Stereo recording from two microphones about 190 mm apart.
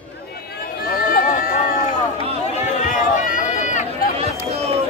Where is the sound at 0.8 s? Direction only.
50° left (ahead or behind).